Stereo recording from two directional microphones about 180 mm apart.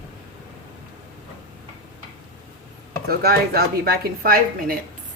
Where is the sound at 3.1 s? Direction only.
60° right (ahead or behind).